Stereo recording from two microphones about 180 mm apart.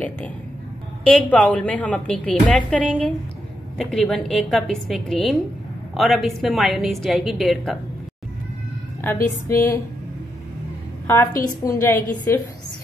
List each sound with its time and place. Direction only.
1.0 s a woman's voice: 5° left (ahead or behind)
9.0 s a woman's voice: 15° left (ahead or behind)
11.6 s a woman's voice: 15° left (ahead or behind)